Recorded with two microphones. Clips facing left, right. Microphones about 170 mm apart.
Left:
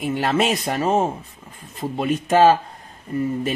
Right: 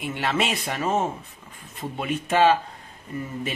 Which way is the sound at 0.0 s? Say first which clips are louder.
Left 5 dB; 40° left (ahead or behind).